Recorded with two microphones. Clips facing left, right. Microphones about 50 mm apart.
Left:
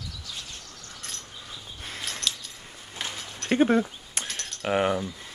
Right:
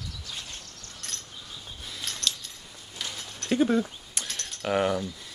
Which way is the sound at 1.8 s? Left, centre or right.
Left.